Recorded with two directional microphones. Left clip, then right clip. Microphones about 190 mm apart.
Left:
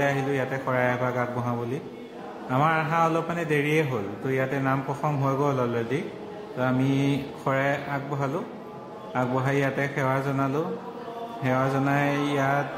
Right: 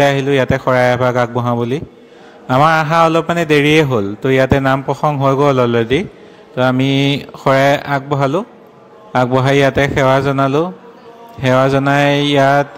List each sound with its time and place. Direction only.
0.0 s a man's voice: 50° right (ahead or behind)